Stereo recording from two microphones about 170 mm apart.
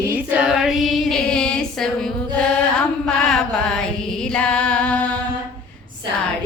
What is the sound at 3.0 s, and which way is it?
Music, 5° left (ahead or behind).